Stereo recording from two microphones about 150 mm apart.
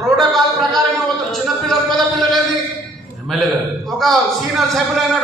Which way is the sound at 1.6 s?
Centre (ahead or behind).